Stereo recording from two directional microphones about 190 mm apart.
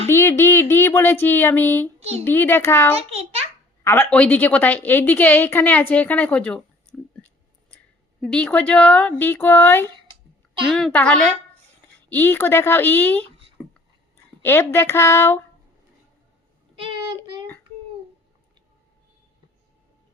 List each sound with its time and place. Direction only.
0.1 s a woman's voice: 10° left (ahead or behind)
2.0 s a child's voice: 35° right (ahead or behind)
2.2 s a woman's voice: 10° left (ahead or behind)
8.2 s a woman's voice: 5° left (ahead or behind)
14.4 s a woman's voice: 10° left (ahead or behind)
16.7 s child singing: 30° right (ahead or behind)